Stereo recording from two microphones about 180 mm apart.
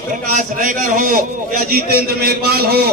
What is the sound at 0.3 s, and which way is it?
A man's voice, 50° right (ahead or behind).